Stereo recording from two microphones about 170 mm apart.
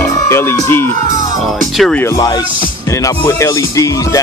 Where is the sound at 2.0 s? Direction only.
20° left (ahead or behind).